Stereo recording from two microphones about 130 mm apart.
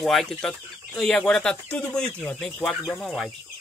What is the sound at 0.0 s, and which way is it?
Speech, centre (ahead or behind).